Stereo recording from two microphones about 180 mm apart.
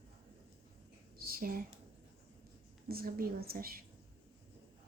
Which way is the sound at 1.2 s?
55° right (ahead or behind).